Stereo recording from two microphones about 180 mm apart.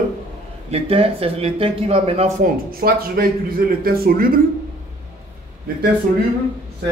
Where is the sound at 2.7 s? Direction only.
55° right (ahead or behind).